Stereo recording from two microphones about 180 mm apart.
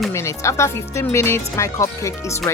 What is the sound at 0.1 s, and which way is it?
Speech, 15° left (ahead or behind).